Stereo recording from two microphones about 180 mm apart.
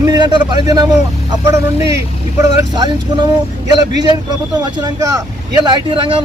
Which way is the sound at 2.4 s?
20° right (ahead or behind).